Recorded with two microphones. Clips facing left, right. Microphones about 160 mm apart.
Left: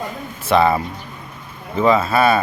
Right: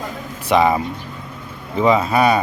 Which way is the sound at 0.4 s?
15° right (ahead or behind).